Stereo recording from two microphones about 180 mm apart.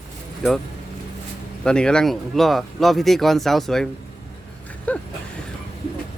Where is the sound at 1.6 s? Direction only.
5° left (ahead or behind).